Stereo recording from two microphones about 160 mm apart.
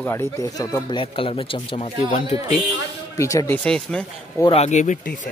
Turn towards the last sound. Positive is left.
turn(degrees=50)  # may be behind; listen again after turning